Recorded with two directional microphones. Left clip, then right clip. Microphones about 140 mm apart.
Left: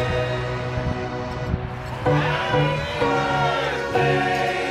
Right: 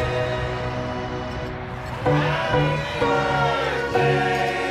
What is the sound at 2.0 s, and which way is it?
Music, centre (ahead or behind).